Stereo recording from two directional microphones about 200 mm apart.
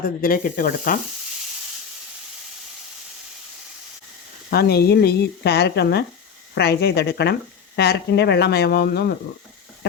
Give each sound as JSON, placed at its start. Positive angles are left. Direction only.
{"t": 0.2, "sound": "speech", "side_deg": 45}
{"t": 4.5, "sound": "speech", "side_deg": 55}